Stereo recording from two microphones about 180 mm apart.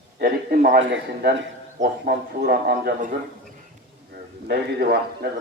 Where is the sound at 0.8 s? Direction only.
90° right.